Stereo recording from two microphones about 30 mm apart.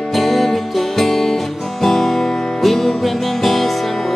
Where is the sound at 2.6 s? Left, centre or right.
Centre.